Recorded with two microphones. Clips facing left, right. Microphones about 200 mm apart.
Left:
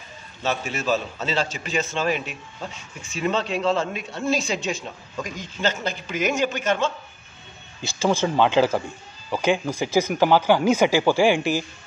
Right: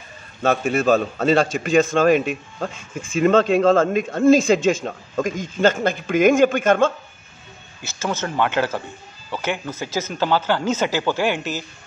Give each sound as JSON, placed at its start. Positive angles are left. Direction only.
{"t": 0.4, "sound": "a man's voice", "side_deg": -50}
{"t": 7.8, "sound": "speech", "side_deg": 15}